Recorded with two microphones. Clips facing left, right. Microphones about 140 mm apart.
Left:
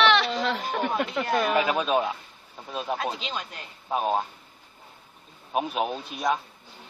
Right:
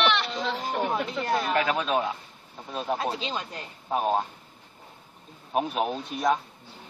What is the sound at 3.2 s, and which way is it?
Speech, 30° right (ahead or behind).